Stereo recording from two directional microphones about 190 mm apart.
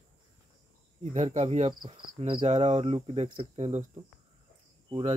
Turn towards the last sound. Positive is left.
turn(degrees=-25)  # may be behind; listen again after turning